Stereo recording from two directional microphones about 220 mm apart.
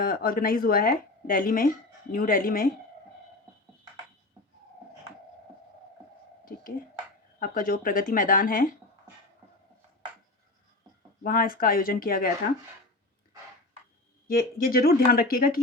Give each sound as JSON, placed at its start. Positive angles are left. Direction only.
{"t": 0.0, "sound": "speech", "side_deg": 40}
{"t": 7.3, "sound": "speech", "side_deg": 40}
{"t": 11.2, "sound": "speech", "side_deg": 40}
{"t": 14.3, "sound": "speech", "side_deg": 40}